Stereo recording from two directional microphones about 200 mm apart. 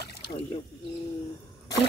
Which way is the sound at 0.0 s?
55° left (ahead or behind).